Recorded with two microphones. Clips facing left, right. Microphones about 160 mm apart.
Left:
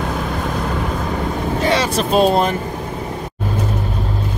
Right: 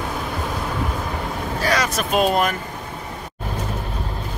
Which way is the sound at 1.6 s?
25° left (ahead or behind).